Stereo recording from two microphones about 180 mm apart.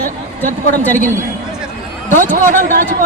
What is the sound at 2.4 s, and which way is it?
Speech, 45° right (ahead or behind).